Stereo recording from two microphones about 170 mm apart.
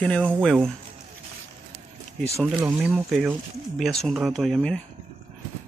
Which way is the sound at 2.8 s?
5° right (ahead or behind).